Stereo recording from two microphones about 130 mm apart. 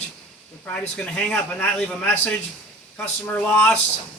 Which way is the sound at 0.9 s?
10° left (ahead or behind).